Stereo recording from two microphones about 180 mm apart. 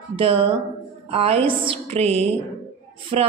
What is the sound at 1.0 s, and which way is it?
A woman's voice, 35° right (ahead or behind).